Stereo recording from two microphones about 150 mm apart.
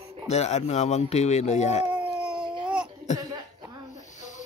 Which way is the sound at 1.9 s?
10° right (ahead or behind).